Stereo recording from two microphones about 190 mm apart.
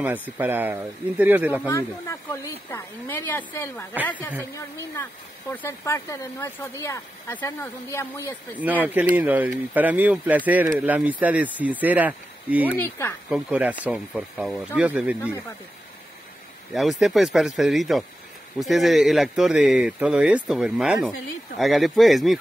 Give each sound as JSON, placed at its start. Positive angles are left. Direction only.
{"t": 0.0, "sound": "speech", "side_deg": -10}
{"t": 1.7, "sound": "speech", "side_deg": 15}
{"t": 9.1, "sound": "speech", "side_deg": -10}
{"t": 12.7, "sound": "speech", "side_deg": 10}
{"t": 13.3, "sound": "speech", "side_deg": -5}
{"t": 16.7, "sound": "speech", "side_deg": 0}